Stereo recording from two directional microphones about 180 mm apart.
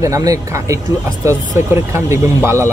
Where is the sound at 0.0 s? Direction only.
15° right (ahead or behind).